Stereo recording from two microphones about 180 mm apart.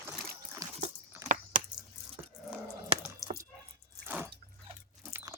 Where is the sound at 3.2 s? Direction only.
20° left (ahead or behind).